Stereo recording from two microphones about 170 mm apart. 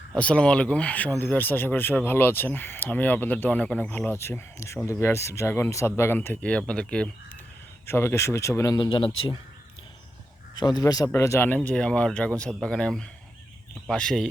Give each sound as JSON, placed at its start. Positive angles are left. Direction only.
{"t": 0.1, "sound": "speech", "side_deg": 5}
{"t": 10.6, "sound": "a man's voice", "side_deg": 25}